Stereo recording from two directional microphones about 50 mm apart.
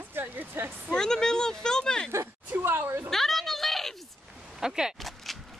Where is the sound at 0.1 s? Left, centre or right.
Right.